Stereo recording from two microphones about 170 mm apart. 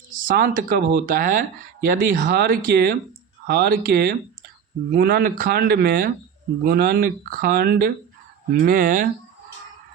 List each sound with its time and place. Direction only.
0.1 s speech: 55° right (ahead or behind)